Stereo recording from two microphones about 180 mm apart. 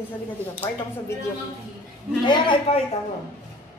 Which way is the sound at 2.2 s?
25° left (ahead or behind).